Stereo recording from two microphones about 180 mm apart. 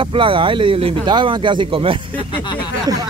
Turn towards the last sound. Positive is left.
turn(degrees=-20)  # may be behind; listen again after turning